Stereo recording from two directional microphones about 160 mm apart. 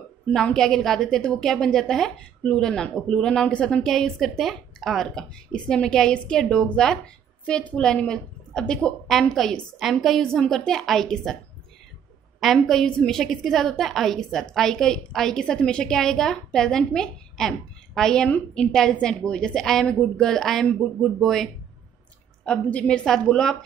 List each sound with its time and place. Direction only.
0.3 s a woman's voice: 5° left (ahead or behind)
12.4 s a woman's voice: centre (ahead or behind)